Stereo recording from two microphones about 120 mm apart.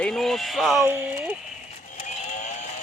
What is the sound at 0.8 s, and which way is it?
Speech, 20° right (ahead or behind).